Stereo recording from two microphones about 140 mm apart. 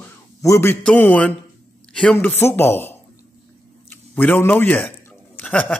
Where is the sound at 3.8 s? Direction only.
15° left (ahead or behind).